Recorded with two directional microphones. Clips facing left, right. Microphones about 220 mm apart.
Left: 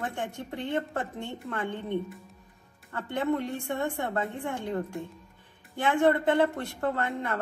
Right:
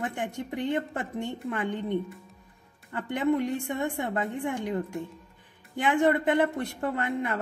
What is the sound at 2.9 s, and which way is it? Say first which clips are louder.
Speech: right 3 dB; 15° right (ahead or behind).